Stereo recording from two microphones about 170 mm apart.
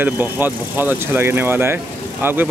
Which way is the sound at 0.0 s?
10° right (ahead or behind).